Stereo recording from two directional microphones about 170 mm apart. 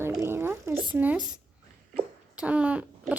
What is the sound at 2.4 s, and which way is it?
Speech, 5° right (ahead or behind).